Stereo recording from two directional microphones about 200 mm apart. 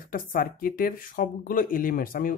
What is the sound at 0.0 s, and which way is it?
Speech, 45° left (ahead or behind).